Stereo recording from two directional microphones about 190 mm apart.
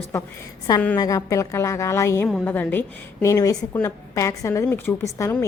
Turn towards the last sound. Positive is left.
turn(degrees=15)  # may be behind; listen again after turning